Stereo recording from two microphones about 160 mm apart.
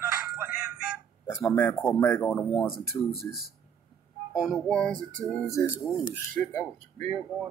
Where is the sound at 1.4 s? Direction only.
15° left (ahead or behind).